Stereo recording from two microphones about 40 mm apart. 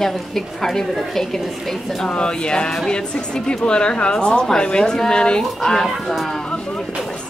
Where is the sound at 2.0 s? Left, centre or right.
Left.